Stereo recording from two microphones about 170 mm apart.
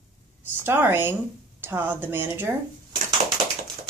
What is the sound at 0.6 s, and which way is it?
A woman's voice, 10° right (ahead or behind).